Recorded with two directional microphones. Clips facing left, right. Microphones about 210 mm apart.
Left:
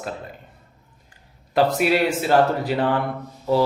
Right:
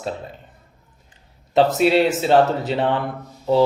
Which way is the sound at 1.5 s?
25° right (ahead or behind).